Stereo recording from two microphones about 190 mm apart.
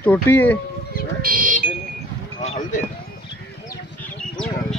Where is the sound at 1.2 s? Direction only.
45° right (ahead or behind).